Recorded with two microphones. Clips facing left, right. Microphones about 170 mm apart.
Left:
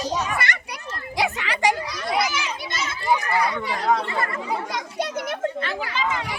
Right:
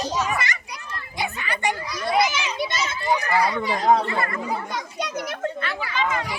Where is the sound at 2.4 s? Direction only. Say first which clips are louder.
Right 4 dB; 55° left (ahead or behind).